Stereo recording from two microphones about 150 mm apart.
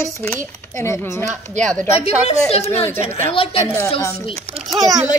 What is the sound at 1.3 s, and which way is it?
Speech, 55° right (ahead or behind).